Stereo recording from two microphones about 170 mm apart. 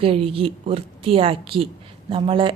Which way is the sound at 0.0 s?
35° right (ahead or behind).